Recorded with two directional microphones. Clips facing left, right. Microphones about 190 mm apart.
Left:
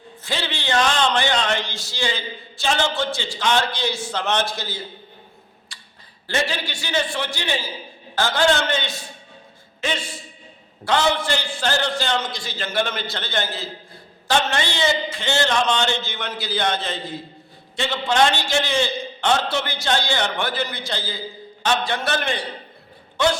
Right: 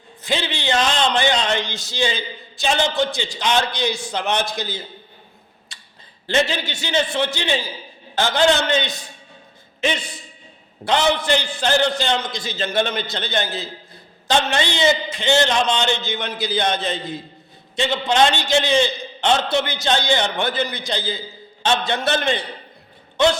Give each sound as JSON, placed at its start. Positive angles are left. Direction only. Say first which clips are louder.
{"t": 0.2, "sound": "speech", "louder": "right 4 dB", "side_deg": -20}
{"t": 5.7, "sound": "a sound", "louder": "even", "side_deg": -20}
{"t": 6.2, "sound": "a man's voice", "louder": "right 4 dB", "side_deg": -20}